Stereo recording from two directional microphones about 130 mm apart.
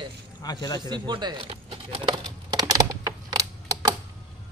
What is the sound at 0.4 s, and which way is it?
Speech, 30° left (ahead or behind).